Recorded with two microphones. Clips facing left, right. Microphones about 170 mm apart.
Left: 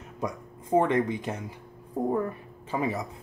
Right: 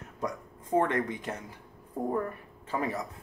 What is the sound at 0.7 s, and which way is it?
Speech, 20° left (ahead or behind).